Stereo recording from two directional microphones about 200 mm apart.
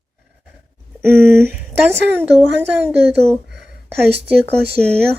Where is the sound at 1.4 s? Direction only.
10° right (ahead or behind); by 5.0 s 5° left (ahead or behind).